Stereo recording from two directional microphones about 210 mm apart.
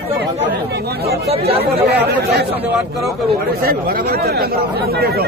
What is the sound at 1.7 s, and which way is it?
Speech, 50° right (ahead or behind).